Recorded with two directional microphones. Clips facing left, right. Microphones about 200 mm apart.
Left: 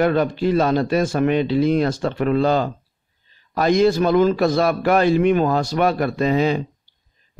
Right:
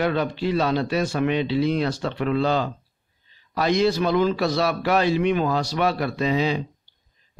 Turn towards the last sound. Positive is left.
turn(degrees=50)  # may be behind; listen again after turning